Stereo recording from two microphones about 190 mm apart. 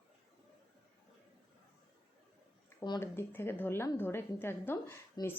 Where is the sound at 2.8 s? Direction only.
15° left (ahead or behind).